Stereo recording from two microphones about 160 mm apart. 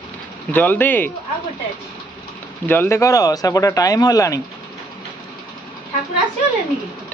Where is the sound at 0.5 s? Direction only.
10° left (ahead or behind).